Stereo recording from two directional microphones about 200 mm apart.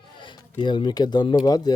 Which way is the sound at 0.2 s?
25° left (ahead or behind).